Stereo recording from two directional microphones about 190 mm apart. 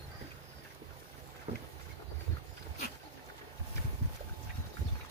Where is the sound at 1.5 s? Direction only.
30° right (ahead or behind).